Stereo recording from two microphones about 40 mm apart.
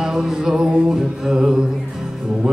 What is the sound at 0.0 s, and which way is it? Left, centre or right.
Music, centre.